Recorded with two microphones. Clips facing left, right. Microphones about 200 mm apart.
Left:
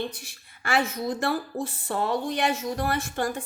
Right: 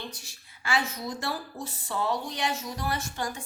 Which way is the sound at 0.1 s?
55° left (ahead or behind).